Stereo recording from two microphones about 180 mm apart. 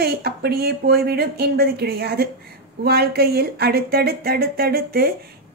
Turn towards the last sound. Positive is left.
turn(degrees=-55)  # may be behind; listen again after turning